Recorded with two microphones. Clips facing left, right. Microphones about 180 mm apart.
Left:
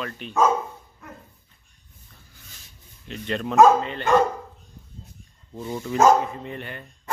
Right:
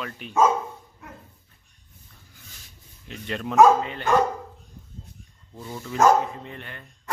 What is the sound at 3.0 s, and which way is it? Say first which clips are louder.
Speech: left 3 dB; 5° right (ahead or behind).